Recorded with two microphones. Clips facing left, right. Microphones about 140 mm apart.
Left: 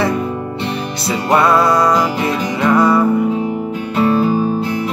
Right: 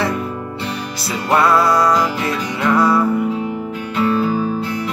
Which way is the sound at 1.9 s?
25° left (ahead or behind).